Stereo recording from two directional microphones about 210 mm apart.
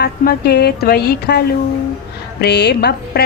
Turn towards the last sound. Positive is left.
turn(degrees=50)  # may be behind; listen again after turning